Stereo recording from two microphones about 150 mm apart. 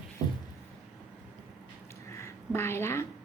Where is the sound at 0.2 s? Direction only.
25° right (ahead or behind).